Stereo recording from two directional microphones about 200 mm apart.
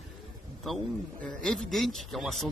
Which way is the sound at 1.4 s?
Centre (ahead or behind).